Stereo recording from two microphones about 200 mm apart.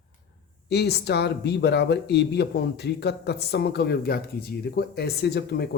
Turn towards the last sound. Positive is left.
turn(degrees=55)  # may be behind; listen again after turning